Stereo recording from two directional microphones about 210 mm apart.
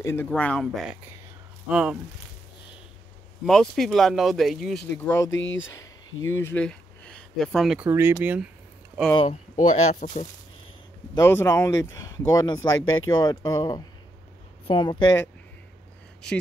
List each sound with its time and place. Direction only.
0.0 s speech: 10° left (ahead or behind); by 2.0 s 5° right (ahead or behind)
3.4 s speech: centre (ahead or behind)
5.3 s speech: 65° left (ahead or behind)
6.2 s speech: 10° left (ahead or behind); by 8.5 s 5° right (ahead or behind)
9.1 s speech: 30° left (ahead or behind)
11.1 s speech: 15° left (ahead or behind)